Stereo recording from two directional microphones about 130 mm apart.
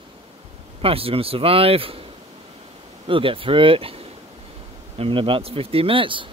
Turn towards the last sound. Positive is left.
turn(degrees=-40)  # may be behind; listen again after turning